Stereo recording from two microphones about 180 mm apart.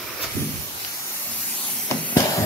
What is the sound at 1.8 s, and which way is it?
Spray, 15° left (ahead or behind).